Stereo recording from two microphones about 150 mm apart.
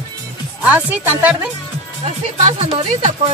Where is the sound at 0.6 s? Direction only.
10° right (ahead or behind).